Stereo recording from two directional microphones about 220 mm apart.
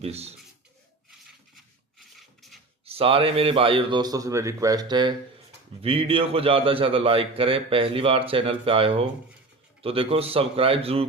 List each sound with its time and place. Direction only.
0.0 s a man's voice: 30° right (ahead or behind)
1.5 s rub: centre (ahead or behind)
2.8 s a man's voice: 25° right (ahead or behind)